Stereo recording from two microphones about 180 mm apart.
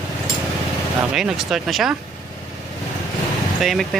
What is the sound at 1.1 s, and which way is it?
Speech, 5° right (ahead or behind).